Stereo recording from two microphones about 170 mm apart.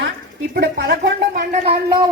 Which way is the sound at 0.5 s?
65° right (ahead or behind).